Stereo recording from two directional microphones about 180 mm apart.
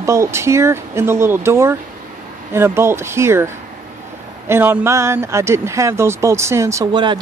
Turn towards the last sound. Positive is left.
turn(degrees=-25)  # may be behind; listen again after turning